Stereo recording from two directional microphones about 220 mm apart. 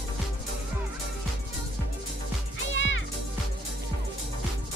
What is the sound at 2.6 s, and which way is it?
Music, 60° left (ahead or behind).